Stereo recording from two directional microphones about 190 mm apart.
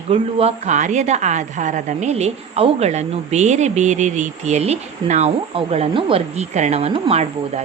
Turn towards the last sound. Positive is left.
turn(degrees=-30)  # may be behind; listen again after turning